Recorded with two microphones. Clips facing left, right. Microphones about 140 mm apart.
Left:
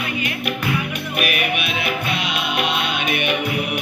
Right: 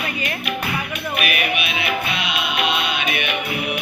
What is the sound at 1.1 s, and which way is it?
Music, 45° left (ahead or behind).